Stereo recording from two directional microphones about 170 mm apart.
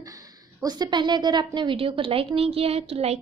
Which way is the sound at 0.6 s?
25° right (ahead or behind).